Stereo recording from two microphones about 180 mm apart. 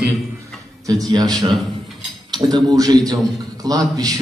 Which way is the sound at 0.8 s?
20° right (ahead or behind).